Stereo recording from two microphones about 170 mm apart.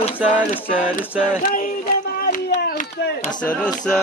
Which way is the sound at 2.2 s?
65° left (ahead or behind).